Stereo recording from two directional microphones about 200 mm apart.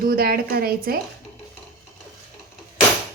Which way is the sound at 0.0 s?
50° right (ahead or behind).